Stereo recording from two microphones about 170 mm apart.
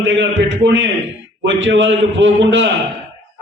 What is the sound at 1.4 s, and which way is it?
A man's voice, 90° right.